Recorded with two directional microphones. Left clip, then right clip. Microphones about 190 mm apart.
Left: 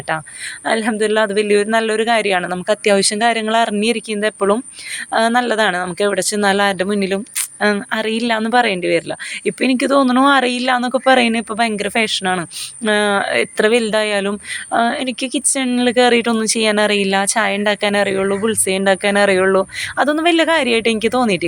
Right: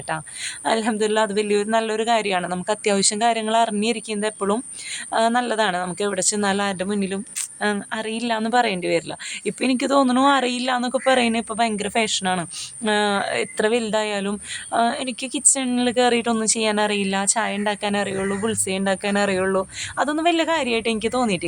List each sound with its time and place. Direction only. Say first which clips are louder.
0.6 s a woman's voice: left 4 dB; 10° left (ahead or behind)